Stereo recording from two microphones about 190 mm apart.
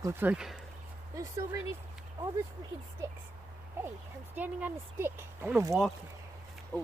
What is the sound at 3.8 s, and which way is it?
Speech, 10° right (ahead or behind).